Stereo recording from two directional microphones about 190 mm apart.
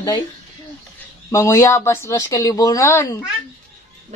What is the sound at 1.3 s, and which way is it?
Speech, 15° left (ahead or behind).